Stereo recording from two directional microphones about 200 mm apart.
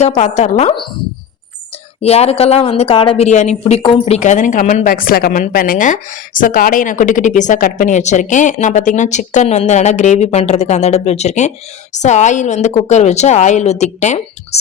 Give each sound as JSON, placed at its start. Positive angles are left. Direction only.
{"t": 0.0, "sound": "speech", "side_deg": 35}
{"t": 2.0, "sound": "speech", "side_deg": 30}